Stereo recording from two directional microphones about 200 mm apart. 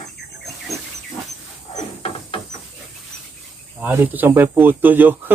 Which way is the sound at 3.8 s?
10° right (ahead or behind).